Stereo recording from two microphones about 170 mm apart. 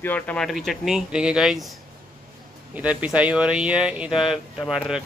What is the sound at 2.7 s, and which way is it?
Speech, 5° right (ahead or behind).